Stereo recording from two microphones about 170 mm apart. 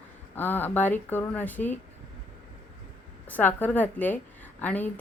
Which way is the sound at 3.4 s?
10° left (ahead or behind).